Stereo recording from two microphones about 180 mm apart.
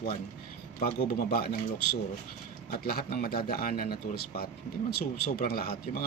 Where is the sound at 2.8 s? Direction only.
55° left (ahead or behind).